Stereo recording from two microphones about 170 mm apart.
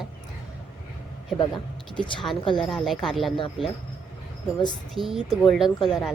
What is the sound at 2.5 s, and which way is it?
Speech, centre (ahead or behind).